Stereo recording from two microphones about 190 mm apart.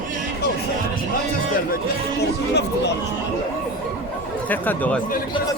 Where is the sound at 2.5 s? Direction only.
65° left (ahead or behind).